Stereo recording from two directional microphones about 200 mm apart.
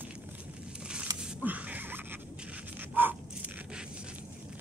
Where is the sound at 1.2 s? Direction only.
5° right (ahead or behind).